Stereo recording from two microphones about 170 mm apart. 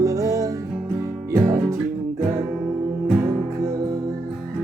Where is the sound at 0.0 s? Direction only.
20° right (ahead or behind).